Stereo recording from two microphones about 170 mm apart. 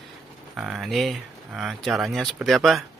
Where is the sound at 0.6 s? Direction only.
Centre (ahead or behind).